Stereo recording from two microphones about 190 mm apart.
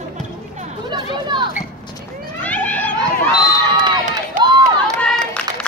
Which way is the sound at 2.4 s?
10° left (ahead or behind).